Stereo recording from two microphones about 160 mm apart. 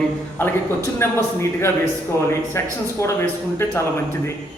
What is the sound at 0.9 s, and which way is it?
Speech, 15° left (ahead or behind).